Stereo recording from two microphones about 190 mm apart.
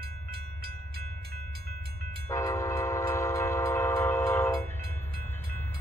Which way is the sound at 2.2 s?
15° left (ahead or behind).